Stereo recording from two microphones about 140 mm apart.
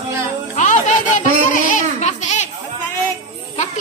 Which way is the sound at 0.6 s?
65° left (ahead or behind).